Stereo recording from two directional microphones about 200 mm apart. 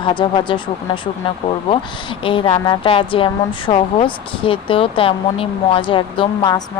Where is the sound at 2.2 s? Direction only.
25° left (ahead or behind).